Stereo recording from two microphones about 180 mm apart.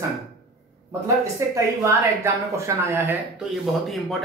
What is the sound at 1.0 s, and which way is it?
Speech, 15° right (ahead or behind).